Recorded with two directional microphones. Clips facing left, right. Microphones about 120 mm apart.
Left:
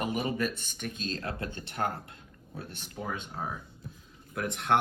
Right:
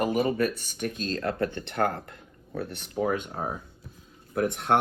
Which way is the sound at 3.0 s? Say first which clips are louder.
Right 9 dB; 40° right (ahead or behind).